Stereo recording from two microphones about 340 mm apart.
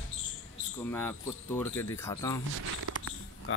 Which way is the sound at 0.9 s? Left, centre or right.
Centre.